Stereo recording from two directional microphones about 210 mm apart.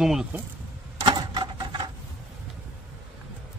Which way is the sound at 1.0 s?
20° right (ahead or behind).